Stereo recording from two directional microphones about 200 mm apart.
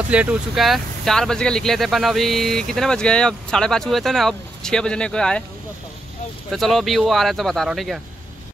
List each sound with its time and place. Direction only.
0.1 s speech: 5° right (ahead or behind)
6.5 s speech: centre (ahead or behind)